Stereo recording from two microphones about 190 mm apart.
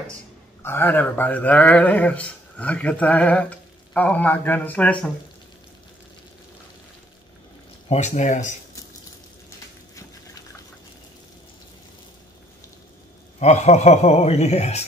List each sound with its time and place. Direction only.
0.6 s speech: 10° left (ahead or behind)
7.9 s a man's voice: 40° left (ahead or behind)
13.4 s a man's voice: 35° left (ahead or behind)